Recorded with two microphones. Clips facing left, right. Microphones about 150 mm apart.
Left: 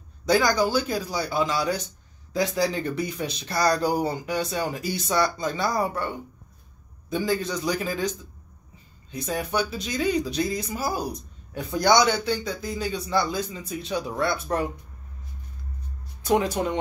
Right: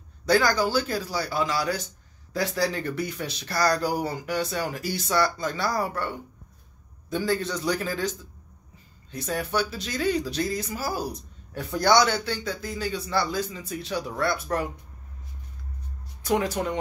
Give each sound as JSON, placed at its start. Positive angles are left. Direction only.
{"t": 0.3, "sound": "speech", "side_deg": 15}
{"t": 9.1, "sound": "speech", "side_deg": 15}
{"t": 16.3, "sound": "speech", "side_deg": 20}